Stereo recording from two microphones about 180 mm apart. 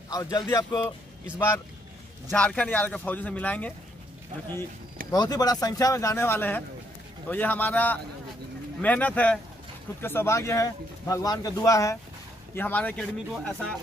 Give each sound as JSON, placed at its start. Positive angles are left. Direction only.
{"t": 0.1, "sound": "speech", "side_deg": 20}
{"t": 2.3, "sound": "speech", "side_deg": 5}
{"t": 5.1, "sound": "speech", "side_deg": 20}